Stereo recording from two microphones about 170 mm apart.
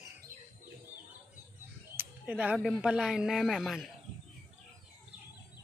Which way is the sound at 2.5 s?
5° right (ahead or behind).